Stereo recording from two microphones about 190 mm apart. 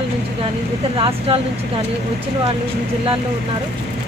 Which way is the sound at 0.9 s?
25° right (ahead or behind).